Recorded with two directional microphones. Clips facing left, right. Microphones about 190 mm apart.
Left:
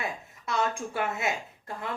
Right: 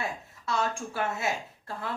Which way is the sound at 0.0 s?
20° left (ahead or behind).